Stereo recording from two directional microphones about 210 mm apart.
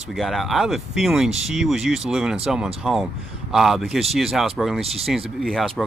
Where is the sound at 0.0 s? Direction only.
Centre (ahead or behind).